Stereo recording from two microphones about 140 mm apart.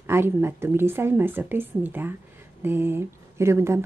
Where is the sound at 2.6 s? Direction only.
15° right (ahead or behind).